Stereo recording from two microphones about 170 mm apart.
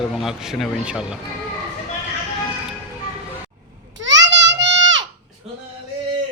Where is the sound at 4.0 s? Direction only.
90° right.